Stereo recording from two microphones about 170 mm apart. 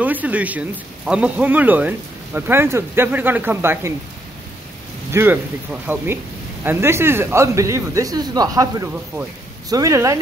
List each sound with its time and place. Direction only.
0.0 s speech: 10° right (ahead or behind)
5.1 s speech: 10° right (ahead or behind)